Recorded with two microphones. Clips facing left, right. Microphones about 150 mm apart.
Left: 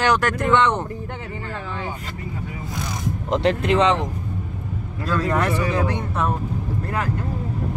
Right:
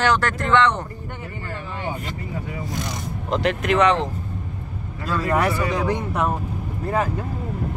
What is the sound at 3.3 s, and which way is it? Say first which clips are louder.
Speech: left 2 dB; 30° left (ahead or behind).